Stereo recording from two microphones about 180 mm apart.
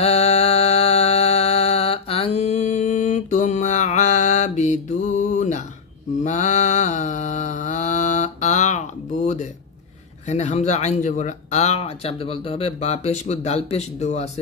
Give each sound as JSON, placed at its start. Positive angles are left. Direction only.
{"t": 0.0, "sound": "mantra", "side_deg": 35}
{"t": 10.2, "sound": "speech", "side_deg": 40}